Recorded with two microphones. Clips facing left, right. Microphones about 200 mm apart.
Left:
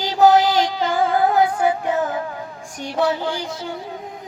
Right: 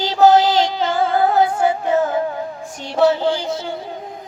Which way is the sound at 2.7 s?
25° right (ahead or behind).